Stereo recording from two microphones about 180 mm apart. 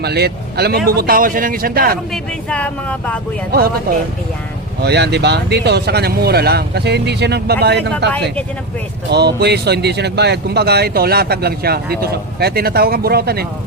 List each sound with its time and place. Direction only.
0.0 s speech: 65° right (ahead or behind)
2.5 s speech: 5° left (ahead or behind)
3.5 s speech: 55° right (ahead or behind)
4.8 s speech: 70° right (ahead or behind)